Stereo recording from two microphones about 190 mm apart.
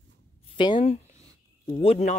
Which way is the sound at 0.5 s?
25° left (ahead or behind).